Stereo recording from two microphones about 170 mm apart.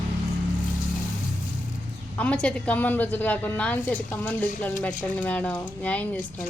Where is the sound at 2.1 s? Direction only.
5° left (ahead or behind).